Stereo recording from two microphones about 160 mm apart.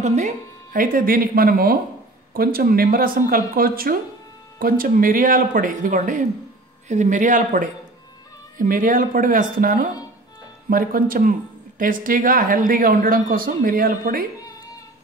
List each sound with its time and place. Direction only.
0.0 s speech: 45° right (ahead or behind)
0.7 s speech: 60° right (ahead or behind)